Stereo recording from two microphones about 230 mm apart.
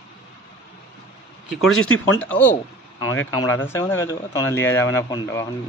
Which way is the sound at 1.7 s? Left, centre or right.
Left.